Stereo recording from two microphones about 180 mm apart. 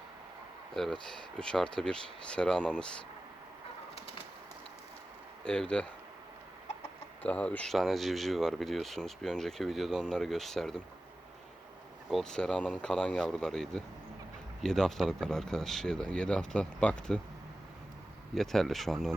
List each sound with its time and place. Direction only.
1.0 s speech: 5° left (ahead or behind)
5.5 s speech: 5° left (ahead or behind)
7.2 s speech: 5° left (ahead or behind)
12.1 s speech: 5° left (ahead or behind)
18.3 s speech: centre (ahead or behind)